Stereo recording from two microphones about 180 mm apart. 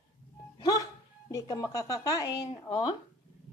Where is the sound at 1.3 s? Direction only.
20° left (ahead or behind).